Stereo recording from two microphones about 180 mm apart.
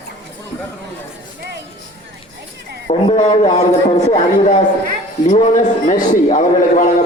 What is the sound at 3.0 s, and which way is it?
A man's voice, 30° left (ahead or behind).